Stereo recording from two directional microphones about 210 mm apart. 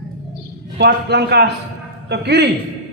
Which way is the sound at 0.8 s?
50° right (ahead or behind).